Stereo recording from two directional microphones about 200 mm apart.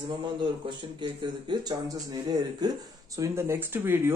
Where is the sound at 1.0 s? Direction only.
25° right (ahead or behind).